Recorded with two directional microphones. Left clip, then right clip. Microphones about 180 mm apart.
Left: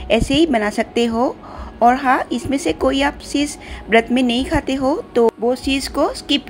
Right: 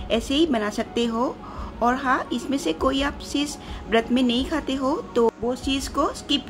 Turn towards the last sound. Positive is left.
turn(degrees=20)  # may be behind; listen again after turning